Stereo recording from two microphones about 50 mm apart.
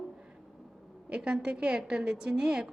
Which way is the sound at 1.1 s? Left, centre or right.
Centre.